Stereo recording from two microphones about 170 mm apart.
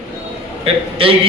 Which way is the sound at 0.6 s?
30° right (ahead or behind).